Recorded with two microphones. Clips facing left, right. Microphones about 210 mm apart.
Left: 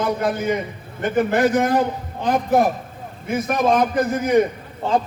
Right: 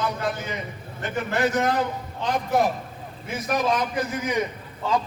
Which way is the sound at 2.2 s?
50° left (ahead or behind).